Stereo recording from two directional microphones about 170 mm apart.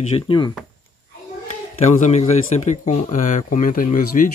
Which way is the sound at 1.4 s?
45° left (ahead or behind).